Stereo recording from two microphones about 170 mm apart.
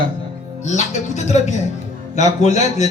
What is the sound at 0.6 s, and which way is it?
Speech, 45° left (ahead or behind).